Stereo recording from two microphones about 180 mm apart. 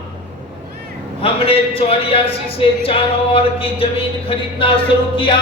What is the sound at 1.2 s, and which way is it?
Speech, 30° left (ahead or behind).